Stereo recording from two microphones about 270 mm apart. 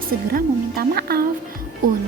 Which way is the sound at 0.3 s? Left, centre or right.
Right.